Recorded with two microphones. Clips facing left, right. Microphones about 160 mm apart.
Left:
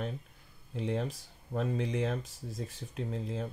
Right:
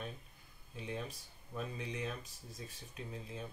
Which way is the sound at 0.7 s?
90° left.